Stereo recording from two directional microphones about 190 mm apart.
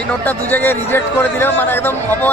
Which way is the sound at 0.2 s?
10° left (ahead or behind).